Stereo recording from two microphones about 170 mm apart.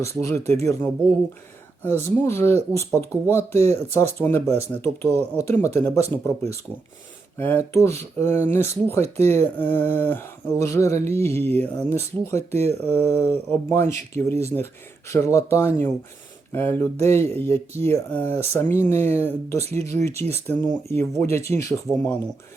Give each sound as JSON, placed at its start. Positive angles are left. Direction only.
{"t": 0.2, "sound": "speech", "side_deg": 15}
{"t": 3.5, "sound": "speech", "side_deg": -40}
{"t": 4.2, "sound": "speech", "side_deg": 10}
{"t": 19.6, "sound": "speech", "side_deg": -40}
{"t": 19.9, "sound": "speech", "side_deg": 15}
{"t": 21.8, "sound": "speech", "side_deg": 10}